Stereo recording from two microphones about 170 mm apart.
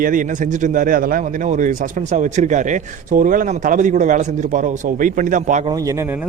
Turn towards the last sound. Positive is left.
turn(degrees=-50)  # may be behind; listen again after turning